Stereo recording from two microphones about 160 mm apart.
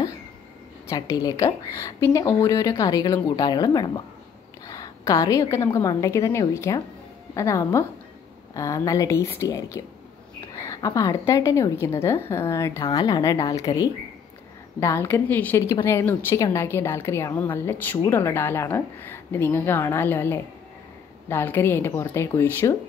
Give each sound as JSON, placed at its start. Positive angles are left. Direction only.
{"t": 0.8, "sound": "a woman's voice", "side_deg": 20}